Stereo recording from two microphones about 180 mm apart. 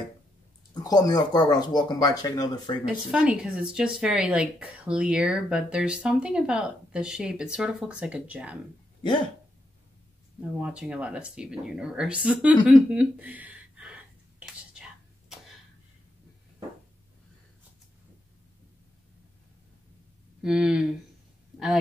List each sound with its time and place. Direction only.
0.8 s speech: 20° left (ahead or behind)
2.8 s speech: 5° right (ahead or behind)
10.6 s speech: 5° right (ahead or behind)
12.6 s a sound: 5° right (ahead or behind)
20.4 s speech: 5° right (ahead or behind)